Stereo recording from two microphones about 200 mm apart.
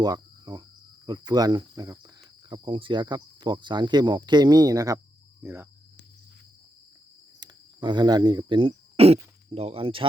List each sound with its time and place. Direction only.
0.0 s cricket: 20° right (ahead or behind)
1.0 s speech: 20° right (ahead or behind)
7.3 s speech: 20° right (ahead or behind)